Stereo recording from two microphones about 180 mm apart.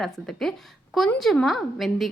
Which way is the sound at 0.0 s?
Centre (ahead or behind).